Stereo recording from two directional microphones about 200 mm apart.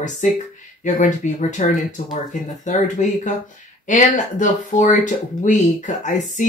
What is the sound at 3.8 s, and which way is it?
Speech, 40° left (ahead or behind).